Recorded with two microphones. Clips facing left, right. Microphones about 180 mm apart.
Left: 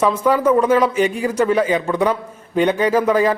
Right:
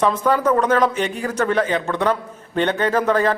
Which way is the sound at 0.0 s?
10° left (ahead or behind).